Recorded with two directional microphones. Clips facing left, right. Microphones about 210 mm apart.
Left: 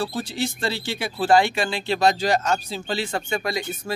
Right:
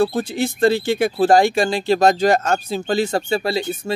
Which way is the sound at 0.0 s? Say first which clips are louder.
Right 7 dB; 55° right (ahead or behind).